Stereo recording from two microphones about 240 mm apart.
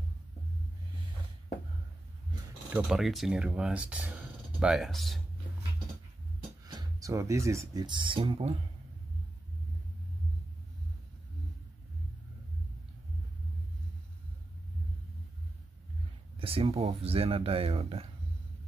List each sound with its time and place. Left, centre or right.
2.7 s speech: centre
6.6 s speech: centre
16.3 s speech: right